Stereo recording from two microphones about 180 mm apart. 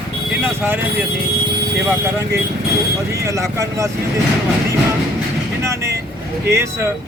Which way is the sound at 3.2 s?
15° right (ahead or behind).